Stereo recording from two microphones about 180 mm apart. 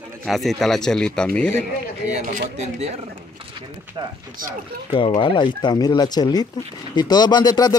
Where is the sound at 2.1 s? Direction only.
45° right (ahead or behind).